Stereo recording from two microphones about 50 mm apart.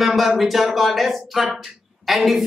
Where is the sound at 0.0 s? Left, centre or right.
Centre.